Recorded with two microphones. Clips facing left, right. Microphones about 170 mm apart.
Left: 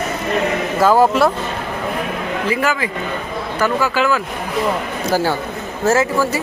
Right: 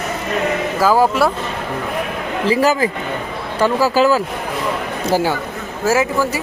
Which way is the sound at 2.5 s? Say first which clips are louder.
Right 6 dB; 35° right (ahead or behind).